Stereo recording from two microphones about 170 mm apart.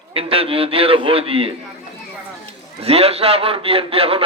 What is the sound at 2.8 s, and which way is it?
A man's voice, 35° right (ahead or behind).